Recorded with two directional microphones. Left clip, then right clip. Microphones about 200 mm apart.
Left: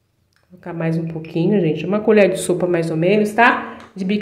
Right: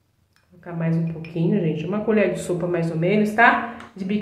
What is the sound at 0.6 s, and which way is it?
Speech, 45° left (ahead or behind).